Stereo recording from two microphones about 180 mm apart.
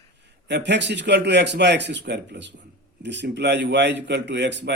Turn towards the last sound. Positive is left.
turn(degrees=-75)  # may be behind; listen again after turning